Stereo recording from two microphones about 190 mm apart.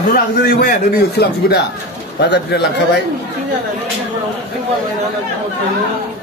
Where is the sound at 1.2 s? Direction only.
60° left (ahead or behind).